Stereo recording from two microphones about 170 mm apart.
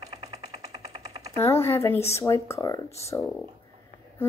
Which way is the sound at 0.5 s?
20° right (ahead or behind).